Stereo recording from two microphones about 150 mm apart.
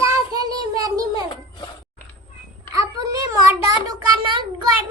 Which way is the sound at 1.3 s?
30° left (ahead or behind).